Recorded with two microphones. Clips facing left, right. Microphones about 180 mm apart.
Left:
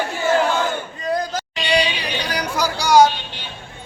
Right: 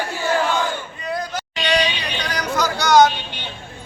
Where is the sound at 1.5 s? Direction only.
5° left (ahead or behind).